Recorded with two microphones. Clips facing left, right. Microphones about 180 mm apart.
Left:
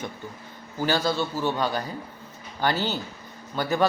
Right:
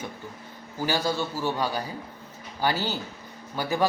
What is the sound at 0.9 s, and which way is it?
Speech, 15° right (ahead or behind).